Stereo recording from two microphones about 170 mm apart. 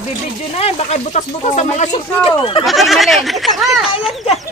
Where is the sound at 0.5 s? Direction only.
40° left (ahead or behind).